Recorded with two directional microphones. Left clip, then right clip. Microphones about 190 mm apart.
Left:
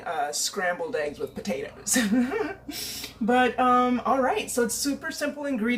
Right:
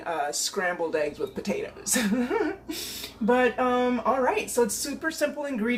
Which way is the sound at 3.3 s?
20° right (ahead or behind).